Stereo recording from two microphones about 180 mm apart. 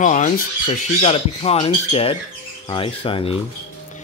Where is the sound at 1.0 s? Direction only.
30° left (ahead or behind).